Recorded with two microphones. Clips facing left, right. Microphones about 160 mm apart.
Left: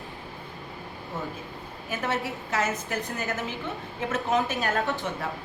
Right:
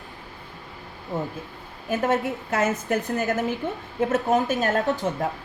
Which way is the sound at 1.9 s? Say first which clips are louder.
Right 7 dB; 50° right (ahead or behind).